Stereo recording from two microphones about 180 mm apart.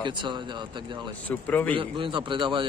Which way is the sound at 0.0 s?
25° right (ahead or behind).